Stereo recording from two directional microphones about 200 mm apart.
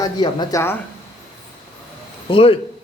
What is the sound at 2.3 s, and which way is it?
Speech, 30° left (ahead or behind).